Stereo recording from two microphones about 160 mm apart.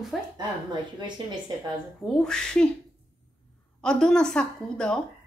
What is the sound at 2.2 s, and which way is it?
Speech, 5° left (ahead or behind).